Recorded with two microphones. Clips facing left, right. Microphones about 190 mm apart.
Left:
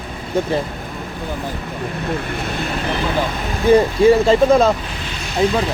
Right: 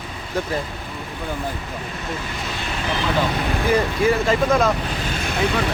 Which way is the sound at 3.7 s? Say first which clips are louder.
Left 8 dB; 30° left (ahead or behind).